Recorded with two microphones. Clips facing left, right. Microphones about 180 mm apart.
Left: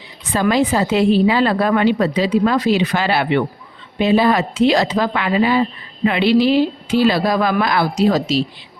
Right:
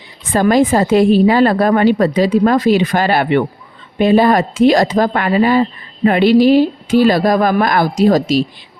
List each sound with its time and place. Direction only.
0.3 s speech: 50° right (ahead or behind)